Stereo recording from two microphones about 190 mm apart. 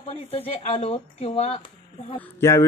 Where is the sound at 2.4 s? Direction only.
15° left (ahead or behind).